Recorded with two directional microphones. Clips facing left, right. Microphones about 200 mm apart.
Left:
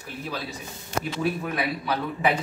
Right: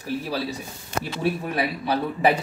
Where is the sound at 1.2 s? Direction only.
35° right (ahead or behind).